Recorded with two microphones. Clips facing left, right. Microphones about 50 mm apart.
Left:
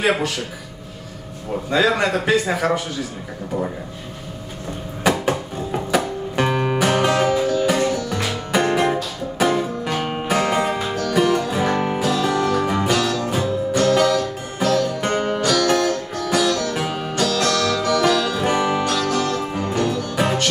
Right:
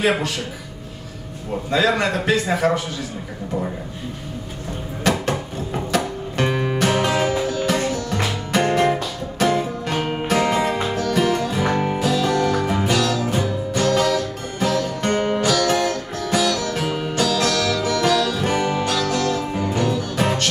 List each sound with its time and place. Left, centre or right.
0.0 s a man's voice: centre
1.7 s a man's voice: centre
5.0 s music: centre
7.6 s music: centre
9.6 s music: centre
10.8 s music: centre
11.1 s music: centre
12.1 s music: centre
16.7 s music: centre
17.3 s music: centre
17.6 s music: centre
18.2 s music: centre
18.9 s music: centre